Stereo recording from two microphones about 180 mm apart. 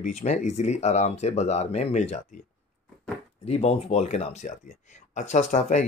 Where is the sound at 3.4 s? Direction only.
35° left (ahead or behind).